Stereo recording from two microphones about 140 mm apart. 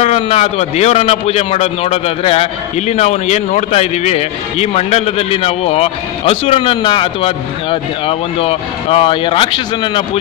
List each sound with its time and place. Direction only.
0.0 s a man's voice: 45° left (ahead or behind)